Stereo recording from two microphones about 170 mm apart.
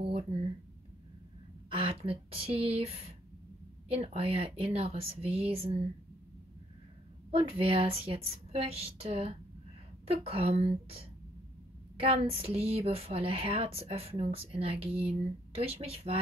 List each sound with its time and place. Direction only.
0.0 s a sound: 30° right (ahead or behind)
1.7 s speech: 35° right (ahead or behind)
7.2 s speech: 35° right (ahead or behind)